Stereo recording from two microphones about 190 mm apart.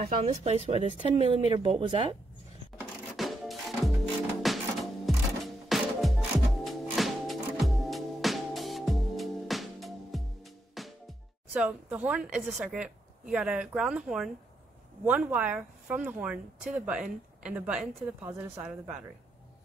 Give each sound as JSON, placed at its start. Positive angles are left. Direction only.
{"t": 0.2, "sound": "speech", "side_deg": -35}
{"t": 3.2, "sound": "music", "side_deg": 0}
{"t": 11.5, "sound": "speech", "side_deg": -5}